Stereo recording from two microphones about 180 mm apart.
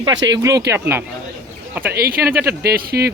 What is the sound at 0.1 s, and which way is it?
Speech, 90° right.